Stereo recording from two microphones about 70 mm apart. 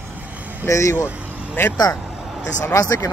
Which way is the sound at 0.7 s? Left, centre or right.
Left.